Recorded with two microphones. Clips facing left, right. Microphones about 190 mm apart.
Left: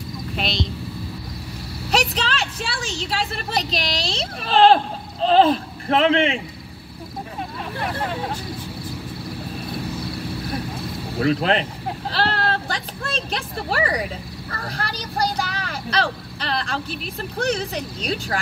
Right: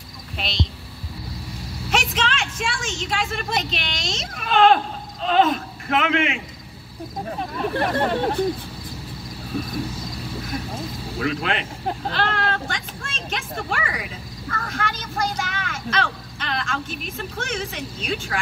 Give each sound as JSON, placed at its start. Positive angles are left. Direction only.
{"t": 1.9, "sound": "a woman's voice", "side_deg": 35}
{"t": 7.7, "sound": "speech", "side_deg": -60}
{"t": 11.1, "sound": "speech", "side_deg": 35}
{"t": 12.1, "sound": "a sound", "side_deg": 35}
{"t": 14.5, "sound": "speech", "side_deg": 35}